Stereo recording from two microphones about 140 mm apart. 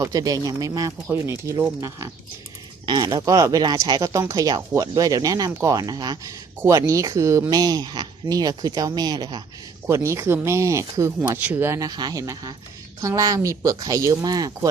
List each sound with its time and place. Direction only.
0.0 s speech: 25° right (ahead or behind)
2.8 s speech: 30° right (ahead or behind)
9.8 s speech: 20° right (ahead or behind)